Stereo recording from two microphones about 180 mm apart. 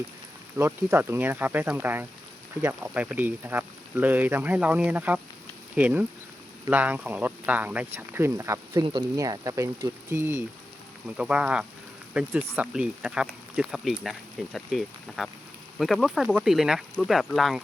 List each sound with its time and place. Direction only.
0.5 s speech: 10° right (ahead or behind)